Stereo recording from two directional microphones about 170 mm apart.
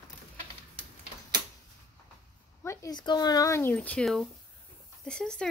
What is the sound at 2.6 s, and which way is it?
Speech, 15° left (ahead or behind).